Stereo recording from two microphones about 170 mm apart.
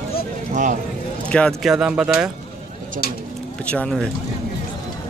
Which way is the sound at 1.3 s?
5° left (ahead or behind).